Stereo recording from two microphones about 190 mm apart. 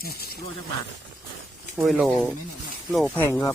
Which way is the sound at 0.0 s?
55° left (ahead or behind).